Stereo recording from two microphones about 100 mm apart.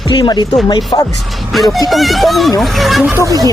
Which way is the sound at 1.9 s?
Centre (ahead or behind).